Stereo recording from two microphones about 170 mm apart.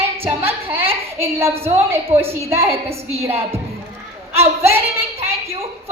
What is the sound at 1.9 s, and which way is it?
A woman's voice, 15° right (ahead or behind).